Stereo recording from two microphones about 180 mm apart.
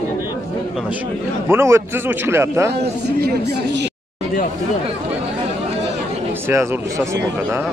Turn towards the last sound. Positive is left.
turn(degrees=-15)  # may be behind; listen again after turning